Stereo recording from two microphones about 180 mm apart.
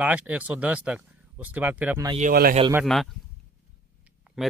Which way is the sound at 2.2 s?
45° right (ahead or behind).